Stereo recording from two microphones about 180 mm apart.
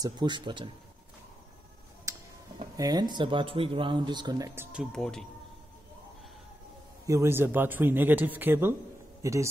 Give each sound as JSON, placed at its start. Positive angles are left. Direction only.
{"t": 0.0, "sound": "speech", "side_deg": -25}
{"t": 2.1, "sound": "tick-tock", "side_deg": -15}
{"t": 2.8, "sound": "speech", "side_deg": -20}
{"t": 4.7, "sound": "speech", "side_deg": 5}
{"t": 7.1, "sound": "a man's voice", "side_deg": -15}